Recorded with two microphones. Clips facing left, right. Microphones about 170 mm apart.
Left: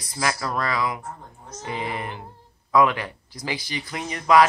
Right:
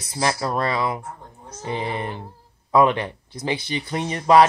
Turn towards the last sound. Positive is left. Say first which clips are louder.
# right 3 dB
turn(degrees=-30)  # may be behind; listen again after turning